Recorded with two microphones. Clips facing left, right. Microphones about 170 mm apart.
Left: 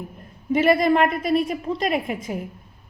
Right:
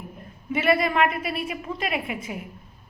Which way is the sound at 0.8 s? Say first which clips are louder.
Left 4 dB; 40° left (ahead or behind).